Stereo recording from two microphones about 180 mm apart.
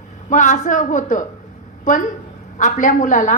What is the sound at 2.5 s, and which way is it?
Speech, 45° left (ahead or behind).